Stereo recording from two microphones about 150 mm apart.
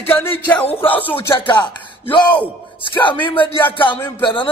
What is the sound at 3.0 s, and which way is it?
Speech, 35° left (ahead or behind).